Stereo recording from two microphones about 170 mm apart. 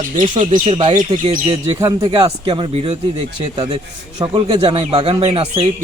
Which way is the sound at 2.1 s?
30° right (ahead or behind).